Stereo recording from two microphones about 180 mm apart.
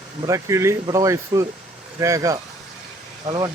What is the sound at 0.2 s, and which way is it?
Speech, 15° right (ahead or behind).